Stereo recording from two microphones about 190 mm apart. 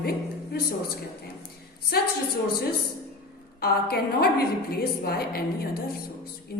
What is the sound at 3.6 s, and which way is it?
A woman's voice, 55° left (ahead or behind).